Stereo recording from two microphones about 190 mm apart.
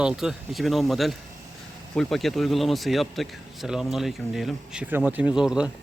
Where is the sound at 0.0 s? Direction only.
5° right (ahead or behind).